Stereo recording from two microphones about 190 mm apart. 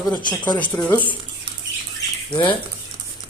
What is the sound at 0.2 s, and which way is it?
Speech, 25° left (ahead or behind).